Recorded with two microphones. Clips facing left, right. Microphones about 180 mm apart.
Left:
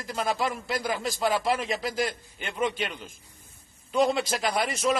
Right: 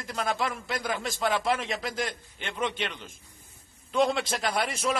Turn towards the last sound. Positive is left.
turn(degrees=0)  # may be behind; listen again after turning